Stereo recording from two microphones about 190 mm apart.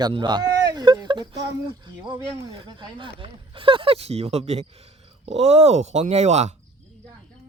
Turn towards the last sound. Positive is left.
turn(degrees=-35)  # may be behind; listen again after turning